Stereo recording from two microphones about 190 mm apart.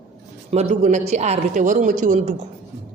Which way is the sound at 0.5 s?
35° right (ahead or behind).